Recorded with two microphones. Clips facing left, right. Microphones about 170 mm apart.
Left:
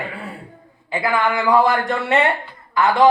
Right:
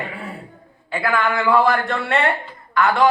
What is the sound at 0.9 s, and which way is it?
Speech, 20° left (ahead or behind).